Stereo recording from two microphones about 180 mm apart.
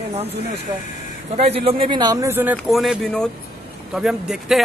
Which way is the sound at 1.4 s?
35° right (ahead or behind).